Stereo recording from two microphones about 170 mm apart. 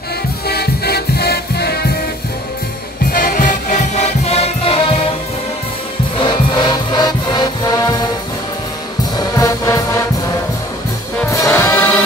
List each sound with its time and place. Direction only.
0.5 s music: 70° left (ahead or behind)
3.1 s music: 55° left (ahead or behind); by 4.7 s 35° left (ahead or behind)
6.2 s music: 25° left (ahead or behind)
9.4 s music: 20° left (ahead or behind)
11.2 s music: 15° left (ahead or behind)